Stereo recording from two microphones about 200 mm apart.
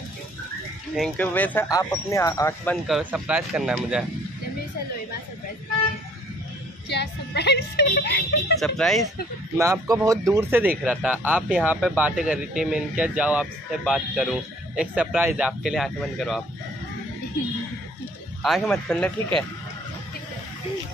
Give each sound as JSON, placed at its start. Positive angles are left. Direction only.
{"t": 0.9, "sound": "speech", "side_deg": 5}
{"t": 3.0, "sound": "speech", "side_deg": -5}
{"t": 6.9, "sound": "a woman's voice", "side_deg": 55}
{"t": 8.5, "sound": "speech", "side_deg": 0}
{"t": 9.6, "sound": "a man's voice", "side_deg": -15}
{"t": 18.4, "sound": "speech", "side_deg": 0}